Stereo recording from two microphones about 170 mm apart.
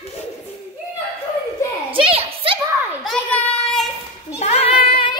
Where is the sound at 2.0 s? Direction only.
30° right (ahead or behind).